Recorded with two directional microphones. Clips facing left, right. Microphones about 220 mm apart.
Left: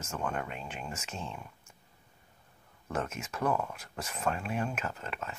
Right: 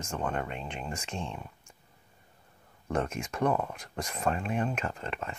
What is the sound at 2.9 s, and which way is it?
Speech, 5° left (ahead or behind).